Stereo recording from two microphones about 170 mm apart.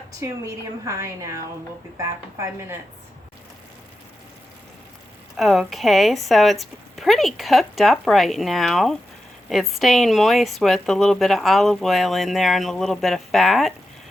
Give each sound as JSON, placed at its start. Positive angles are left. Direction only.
{"t": 0.2, "sound": "a woman's voice", "side_deg": -15}
{"t": 5.4, "sound": "a woman's voice", "side_deg": 0}